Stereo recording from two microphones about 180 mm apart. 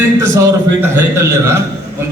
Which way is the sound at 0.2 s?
15° right (ahead or behind).